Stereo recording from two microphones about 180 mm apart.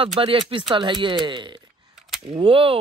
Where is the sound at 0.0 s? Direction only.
30° right (ahead or behind).